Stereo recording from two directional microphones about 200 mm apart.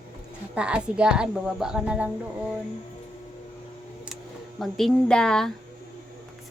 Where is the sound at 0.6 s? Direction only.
5° right (ahead or behind).